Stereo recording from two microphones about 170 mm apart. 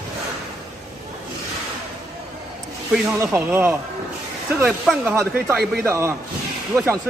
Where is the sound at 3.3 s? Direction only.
15° right (ahead or behind).